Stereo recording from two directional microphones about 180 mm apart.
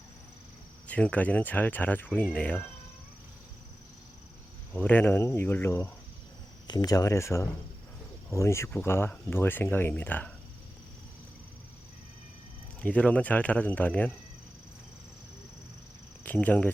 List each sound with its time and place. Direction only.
0.9 s speech: 10° left (ahead or behind)
4.7 s speech: 10° left (ahead or behind)
12.8 s speech: 5° left (ahead or behind)
16.2 s speech: 10° left (ahead or behind)